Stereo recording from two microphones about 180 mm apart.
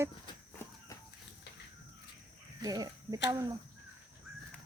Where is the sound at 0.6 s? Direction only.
15° left (ahead or behind).